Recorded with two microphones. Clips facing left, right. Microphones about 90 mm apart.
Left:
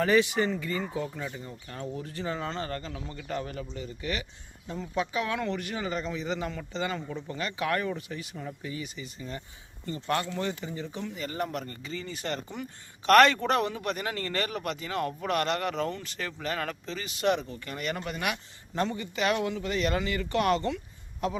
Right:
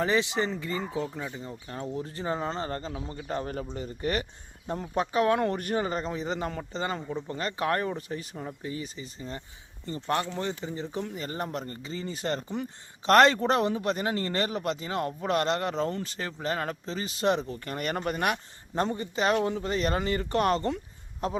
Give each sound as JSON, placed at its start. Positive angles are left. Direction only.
{"t": 0.0, "sound": "speech", "side_deg": -25}